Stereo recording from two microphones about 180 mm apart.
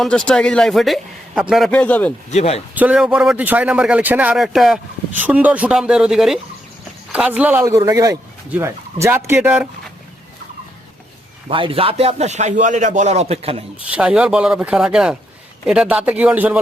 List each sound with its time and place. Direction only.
0.0 s a man's voice: 5° left (ahead or behind)
2.3 s speech: 35° left (ahead or behind)
2.7 s a man's voice: 5° right (ahead or behind)
11.4 s a man's voice: 30° right (ahead or behind)
13.9 s a man's voice: 5° right (ahead or behind)